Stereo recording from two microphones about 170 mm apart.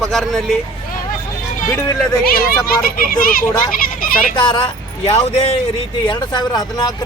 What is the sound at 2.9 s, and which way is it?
A child's voice, 60° left (ahead or behind).